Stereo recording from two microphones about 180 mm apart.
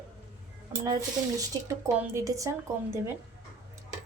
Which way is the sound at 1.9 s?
15° right (ahead or behind).